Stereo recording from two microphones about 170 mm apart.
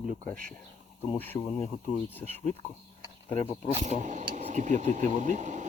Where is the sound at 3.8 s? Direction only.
45° right (ahead or behind).